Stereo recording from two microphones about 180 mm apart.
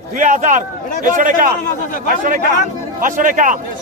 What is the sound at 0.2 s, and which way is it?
Speech, 45° right (ahead or behind).